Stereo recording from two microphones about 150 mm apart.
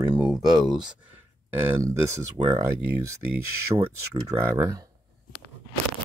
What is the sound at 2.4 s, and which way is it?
Speech, 35° right (ahead or behind).